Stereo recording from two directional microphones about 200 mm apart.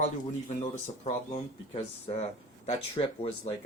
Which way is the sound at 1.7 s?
30° left (ahead or behind).